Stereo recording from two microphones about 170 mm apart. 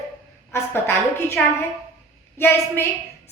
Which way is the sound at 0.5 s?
15° left (ahead or behind).